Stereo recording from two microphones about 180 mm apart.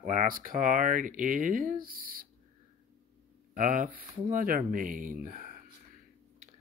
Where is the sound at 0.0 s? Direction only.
50° right (ahead or behind).